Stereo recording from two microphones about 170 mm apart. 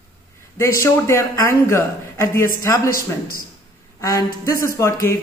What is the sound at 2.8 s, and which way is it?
Speech, 60° left (ahead or behind).